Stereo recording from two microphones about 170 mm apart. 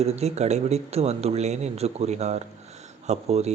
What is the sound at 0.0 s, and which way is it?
Speech, 40° right (ahead or behind).